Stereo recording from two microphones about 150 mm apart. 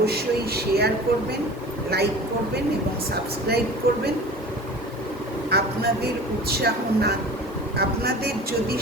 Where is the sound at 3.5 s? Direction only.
90° right.